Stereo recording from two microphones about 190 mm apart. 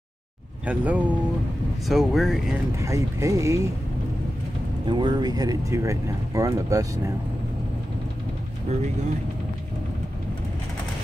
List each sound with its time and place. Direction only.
0.7 s speech: 5° right (ahead or behind)
2.8 s speech: 15° right (ahead or behind)
4.8 s speech: 25° right (ahead or behind)